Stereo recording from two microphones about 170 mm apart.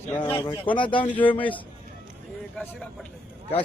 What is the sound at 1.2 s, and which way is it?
Speech, 10° left (ahead or behind).